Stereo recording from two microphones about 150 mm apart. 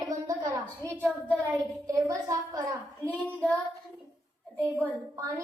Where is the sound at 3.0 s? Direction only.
10° left (ahead or behind).